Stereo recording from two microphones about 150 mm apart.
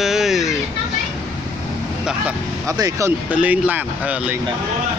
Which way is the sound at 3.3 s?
10° right (ahead or behind).